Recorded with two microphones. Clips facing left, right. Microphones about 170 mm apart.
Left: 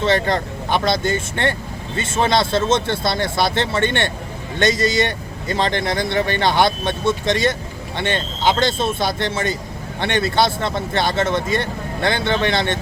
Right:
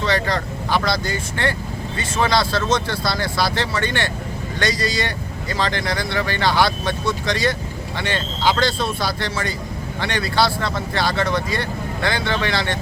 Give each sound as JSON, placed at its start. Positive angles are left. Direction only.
{"t": 0.0, "sound": "speech", "side_deg": 25}